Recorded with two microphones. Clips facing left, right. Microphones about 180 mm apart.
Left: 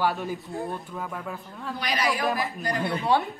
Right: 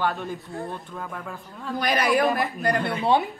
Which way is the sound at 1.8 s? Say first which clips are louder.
Right 6 dB; 50° right (ahead or behind).